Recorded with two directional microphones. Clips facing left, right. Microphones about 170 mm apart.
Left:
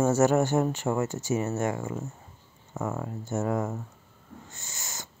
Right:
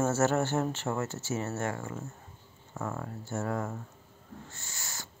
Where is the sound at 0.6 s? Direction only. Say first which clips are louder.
Left 5 dB; 15° left (ahead or behind).